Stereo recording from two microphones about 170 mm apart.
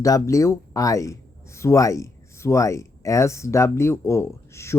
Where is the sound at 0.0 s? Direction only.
20° left (ahead or behind).